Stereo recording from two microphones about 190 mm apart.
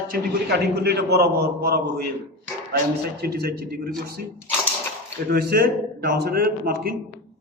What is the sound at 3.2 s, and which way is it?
Speech, 55° right (ahead or behind).